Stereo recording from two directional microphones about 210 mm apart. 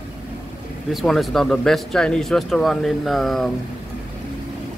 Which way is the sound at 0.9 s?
Centre (ahead or behind).